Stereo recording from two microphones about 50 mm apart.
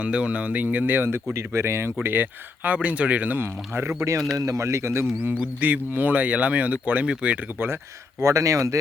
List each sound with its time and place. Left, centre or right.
0.0 s speech: right
1.3 s speech: right
2.6 s speech: right
3.4 s speech: right
5.5 s speech: right
8.2 s speech: right